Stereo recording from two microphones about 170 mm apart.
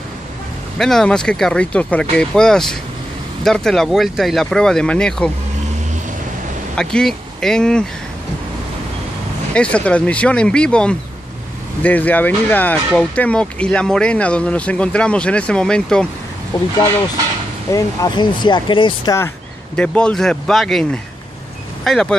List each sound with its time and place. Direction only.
0.7 s speech: centre (ahead or behind)
6.8 s speech: 5° left (ahead or behind)
9.5 s speech: 5° left (ahead or behind)
17.7 s speech: 25° left (ahead or behind)
19.1 s speech: 10° left (ahead or behind)